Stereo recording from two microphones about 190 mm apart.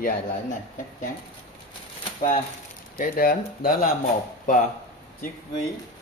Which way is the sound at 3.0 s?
50° left (ahead or behind).